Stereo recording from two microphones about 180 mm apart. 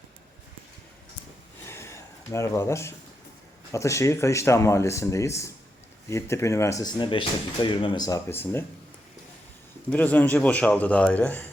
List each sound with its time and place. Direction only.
1.6 s a sound: 15° left (ahead or behind)
3.7 s speech: 15° left (ahead or behind)
9.9 s speech: 10° left (ahead or behind)